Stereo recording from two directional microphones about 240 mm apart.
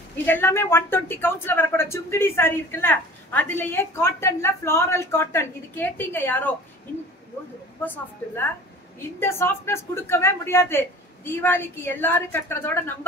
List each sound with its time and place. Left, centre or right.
0.2 s speech: centre
7.8 s speech: centre